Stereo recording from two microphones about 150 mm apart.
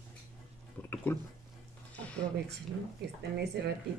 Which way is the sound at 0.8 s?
10° left (ahead or behind).